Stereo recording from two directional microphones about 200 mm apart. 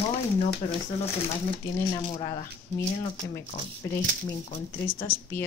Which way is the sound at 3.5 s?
30° left (ahead or behind).